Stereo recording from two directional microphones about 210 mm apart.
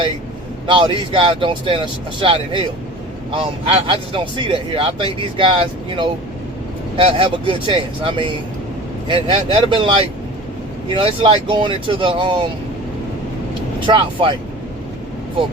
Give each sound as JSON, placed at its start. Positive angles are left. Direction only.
{"t": 0.7, "sound": "speech", "side_deg": -25}
{"t": 13.7, "sound": "speech", "side_deg": -25}